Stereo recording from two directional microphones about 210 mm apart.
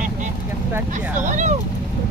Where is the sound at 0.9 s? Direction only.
35° right (ahead or behind).